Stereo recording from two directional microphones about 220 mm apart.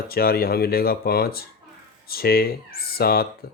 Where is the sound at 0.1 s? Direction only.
45° left (ahead or behind).